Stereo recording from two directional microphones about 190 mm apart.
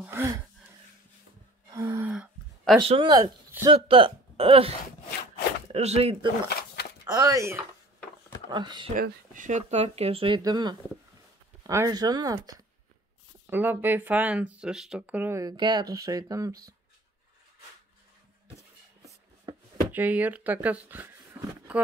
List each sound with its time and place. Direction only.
0.0 s gasp: 15° right (ahead or behind)
1.7 s gasp: 15° right (ahead or behind)
2.8 s speech: 25° right (ahead or behind)
3.7 s speech: 30° right (ahead or behind)
6.5 s a sound: 55° left (ahead or behind)
7.1 s speech: 20° right (ahead or behind)
8.9 s speech: 45° right (ahead or behind); by 16.7 s 15° right (ahead or behind)
19.9 s speech: 10° right (ahead or behind)